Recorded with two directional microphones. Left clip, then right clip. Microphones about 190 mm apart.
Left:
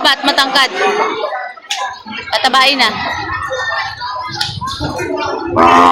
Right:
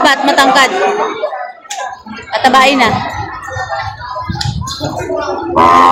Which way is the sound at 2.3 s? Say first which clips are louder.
Right 3 dB; centre (ahead or behind).